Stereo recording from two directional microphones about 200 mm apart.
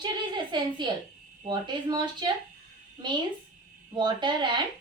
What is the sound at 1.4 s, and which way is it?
Speech, 20° right (ahead or behind).